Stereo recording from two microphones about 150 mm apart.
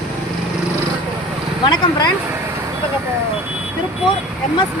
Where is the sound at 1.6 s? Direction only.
30° left (ahead or behind).